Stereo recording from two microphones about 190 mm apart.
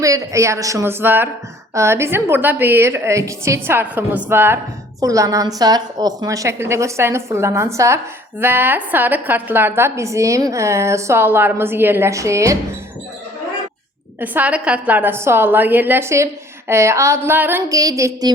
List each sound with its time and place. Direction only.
0.0 s a woman's voice: 15° right (ahead or behind)
14.2 s a woman's voice: 10° right (ahead or behind)